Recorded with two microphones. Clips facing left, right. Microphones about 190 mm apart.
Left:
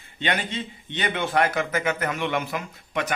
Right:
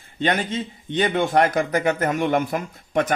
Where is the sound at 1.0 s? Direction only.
40° right (ahead or behind).